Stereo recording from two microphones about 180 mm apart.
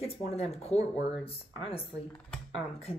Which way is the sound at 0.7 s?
35° left (ahead or behind).